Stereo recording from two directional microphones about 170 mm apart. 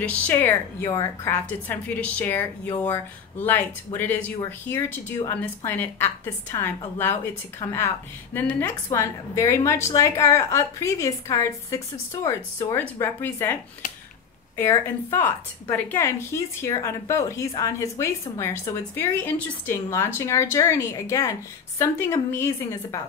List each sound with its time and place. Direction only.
0.0 s a woman's voice: 10° left (ahead or behind)
14.7 s a woman's voice: 15° left (ahead or behind)